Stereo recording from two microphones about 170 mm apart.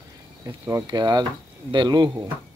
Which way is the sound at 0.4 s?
20° right (ahead or behind).